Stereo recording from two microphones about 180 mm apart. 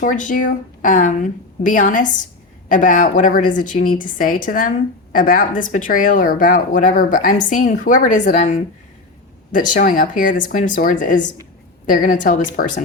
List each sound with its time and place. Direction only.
0.0 s speech: 50° left (ahead or behind)